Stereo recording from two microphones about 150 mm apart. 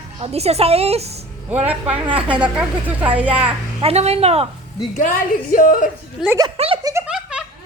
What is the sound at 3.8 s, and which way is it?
Speech, 40° right (ahead or behind).